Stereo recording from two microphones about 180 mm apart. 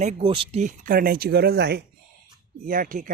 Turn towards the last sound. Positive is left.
turn(degrees=-50)  # may be behind; listen again after turning